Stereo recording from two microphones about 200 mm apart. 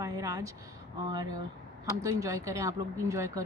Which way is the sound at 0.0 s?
15° right (ahead or behind).